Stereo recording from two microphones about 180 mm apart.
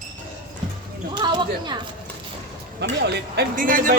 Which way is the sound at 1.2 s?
25° right (ahead or behind).